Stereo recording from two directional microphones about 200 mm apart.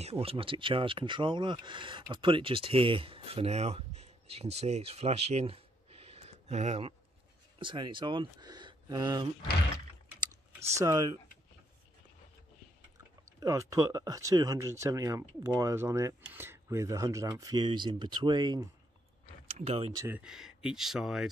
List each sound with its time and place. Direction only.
0.0 s speech: 30° right (ahead or behind)
10.7 s speech: 20° right (ahead or behind)
13.4 s speech: 15° right (ahead or behind)
19.4 s speech: 30° right (ahead or behind)
20.1 s speech: 5° right (ahead or behind)